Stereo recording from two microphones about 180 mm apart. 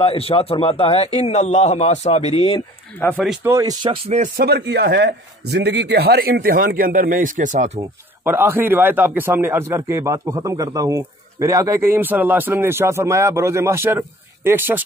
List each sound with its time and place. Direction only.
0.0 s a man's voice: 30° left (ahead or behind)
3.0 s speech: 10° left (ahead or behind)
3.4 s speech: 20° right (ahead or behind)
4.4 s a man's voice: 65° right (ahead or behind); by 7.8 s 40° right (ahead or behind)
8.2 s a man's voice: 15° right (ahead or behind)